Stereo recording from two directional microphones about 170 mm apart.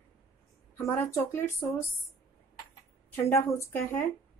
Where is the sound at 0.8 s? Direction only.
15° left (ahead or behind).